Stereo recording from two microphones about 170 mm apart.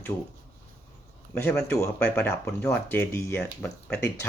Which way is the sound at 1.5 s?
5° left (ahead or behind).